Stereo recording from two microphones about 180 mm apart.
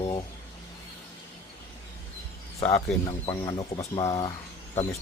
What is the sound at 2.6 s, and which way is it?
Speech, 20° left (ahead or behind).